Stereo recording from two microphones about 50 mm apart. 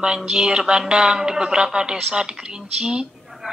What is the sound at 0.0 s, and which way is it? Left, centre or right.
A woman's voice, centre.